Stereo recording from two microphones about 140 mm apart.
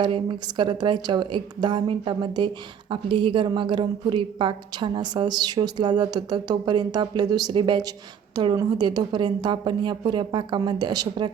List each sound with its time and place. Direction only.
0.0 s speech: 35° right (ahead or behind)